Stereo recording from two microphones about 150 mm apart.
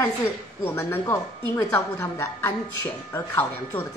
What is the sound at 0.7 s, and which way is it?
A woman's voice, 15° left (ahead or behind).